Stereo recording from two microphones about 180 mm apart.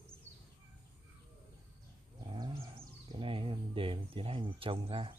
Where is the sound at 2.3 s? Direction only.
25° right (ahead or behind).